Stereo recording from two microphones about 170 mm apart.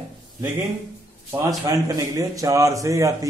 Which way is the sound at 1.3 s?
20° right (ahead or behind).